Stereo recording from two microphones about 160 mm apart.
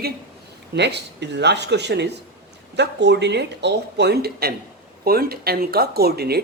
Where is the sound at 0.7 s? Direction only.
90° right.